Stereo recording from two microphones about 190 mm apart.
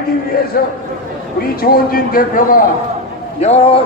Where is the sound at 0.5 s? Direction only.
50° left (ahead or behind).